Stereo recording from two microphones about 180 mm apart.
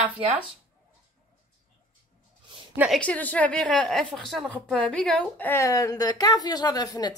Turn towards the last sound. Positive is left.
turn(degrees=20)  # may be behind; listen again after turning